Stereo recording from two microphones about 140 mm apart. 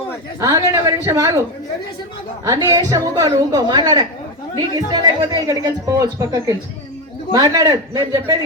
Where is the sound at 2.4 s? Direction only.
25° right (ahead or behind).